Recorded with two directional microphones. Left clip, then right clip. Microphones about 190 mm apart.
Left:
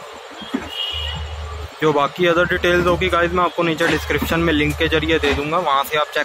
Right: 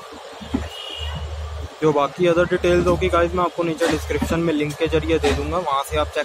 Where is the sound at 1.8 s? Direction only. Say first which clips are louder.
Left 2 dB; centre (ahead or behind).